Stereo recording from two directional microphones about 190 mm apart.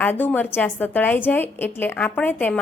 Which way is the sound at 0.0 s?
10° left (ahead or behind).